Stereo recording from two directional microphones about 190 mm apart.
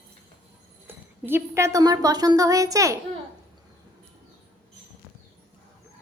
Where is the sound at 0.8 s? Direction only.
10° right (ahead or behind).